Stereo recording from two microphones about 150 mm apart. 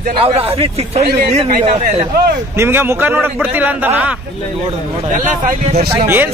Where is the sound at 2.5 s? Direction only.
15° right (ahead or behind).